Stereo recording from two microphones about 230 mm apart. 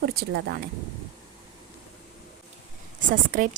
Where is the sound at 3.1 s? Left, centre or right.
Right.